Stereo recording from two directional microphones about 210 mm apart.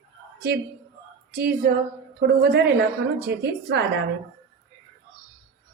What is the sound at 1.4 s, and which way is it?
Speech, 50° right (ahead or behind).